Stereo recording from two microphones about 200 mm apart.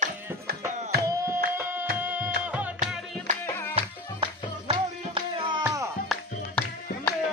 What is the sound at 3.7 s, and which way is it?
Music, 25° right (ahead or behind).